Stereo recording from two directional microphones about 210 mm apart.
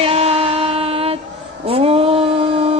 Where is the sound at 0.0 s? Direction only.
30° right (ahead or behind).